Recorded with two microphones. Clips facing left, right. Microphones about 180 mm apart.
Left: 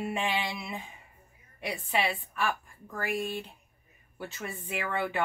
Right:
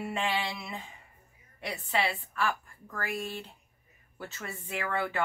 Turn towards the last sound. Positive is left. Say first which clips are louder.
# left 1 dB
turn(degrees=15)  # may be behind; listen again after turning